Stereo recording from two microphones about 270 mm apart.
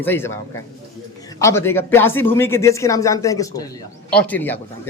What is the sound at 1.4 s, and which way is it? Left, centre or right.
A man's voice, centre.